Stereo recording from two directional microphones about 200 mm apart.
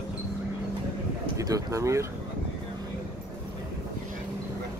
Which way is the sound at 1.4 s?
15° right (ahead or behind).